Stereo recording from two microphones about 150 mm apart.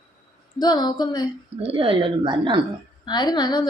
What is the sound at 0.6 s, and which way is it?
Speech, 25° left (ahead or behind).